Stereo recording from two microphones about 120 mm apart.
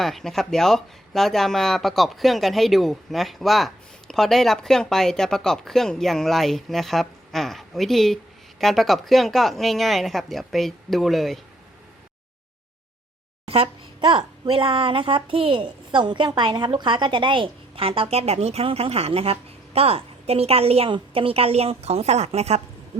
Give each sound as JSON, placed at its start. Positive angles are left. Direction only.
{"t": 0.0, "sound": "speech", "side_deg": 0}
{"t": 13.5, "sound": "a woman's voice", "side_deg": -45}